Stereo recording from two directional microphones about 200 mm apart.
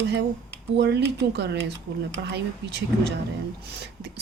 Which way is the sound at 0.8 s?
60° right (ahead or behind).